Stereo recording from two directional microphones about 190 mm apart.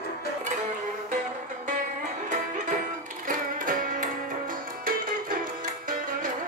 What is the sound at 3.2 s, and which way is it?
Music, 45° right (ahead or behind).